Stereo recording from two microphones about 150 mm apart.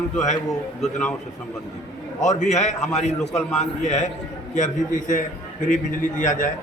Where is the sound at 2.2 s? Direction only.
55° left (ahead or behind).